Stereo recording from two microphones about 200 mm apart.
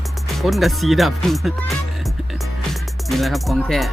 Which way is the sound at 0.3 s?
Centre (ahead or behind).